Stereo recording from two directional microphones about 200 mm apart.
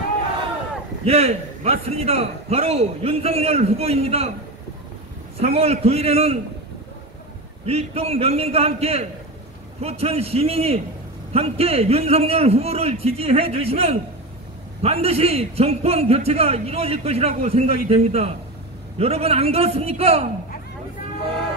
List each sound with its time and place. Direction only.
1.0 s a man's voice: 30° right (ahead or behind)
5.5 s a man's voice: 30° right (ahead or behind)
7.6 s a man's voice: 30° right (ahead or behind)